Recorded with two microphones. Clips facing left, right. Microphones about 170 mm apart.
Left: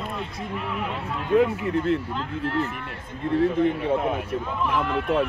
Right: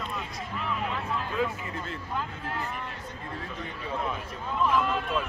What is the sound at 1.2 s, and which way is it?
Speech, 60° left (ahead or behind).